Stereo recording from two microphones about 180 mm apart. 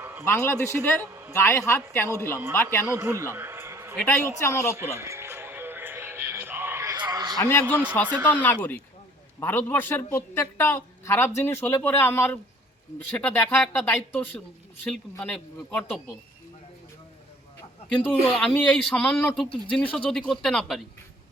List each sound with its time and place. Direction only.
0.0 s a sound: 10° right (ahead or behind)
0.3 s a man's voice: 15° left (ahead or behind)
2.8 s a man's voice: 10° right (ahead or behind)
3.9 s a man's voice: 10° left (ahead or behind)
4.9 s music: 15° right (ahead or behind)
7.3 s a man's voice: 15° left (ahead or behind)
17.9 s a man's voice: 5° left (ahead or behind)